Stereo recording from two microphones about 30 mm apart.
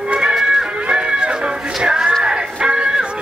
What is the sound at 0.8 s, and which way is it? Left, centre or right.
Music, right.